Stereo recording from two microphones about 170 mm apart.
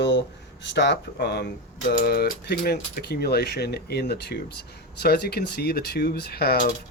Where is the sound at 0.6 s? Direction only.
90° left; by 6.7 s 65° left (ahead or behind).